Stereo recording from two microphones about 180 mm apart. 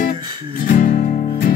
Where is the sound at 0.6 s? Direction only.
50° left (ahead or behind).